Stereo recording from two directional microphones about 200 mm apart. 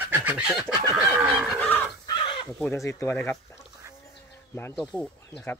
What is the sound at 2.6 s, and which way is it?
Speech, 10° left (ahead or behind).